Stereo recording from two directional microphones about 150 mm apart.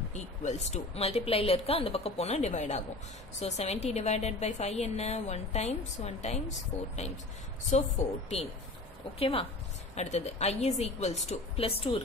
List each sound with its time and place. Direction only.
0.1 s a woman's voice: 50° left (ahead or behind)
7.7 s a woman's voice: 50° left (ahead or behind)
9.2 s a woman's voice: 40° left (ahead or behind)
9.9 s a woman's voice: 50° left (ahead or behind)